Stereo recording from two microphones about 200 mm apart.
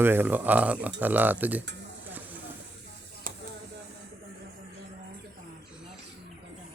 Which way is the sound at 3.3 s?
45° right (ahead or behind).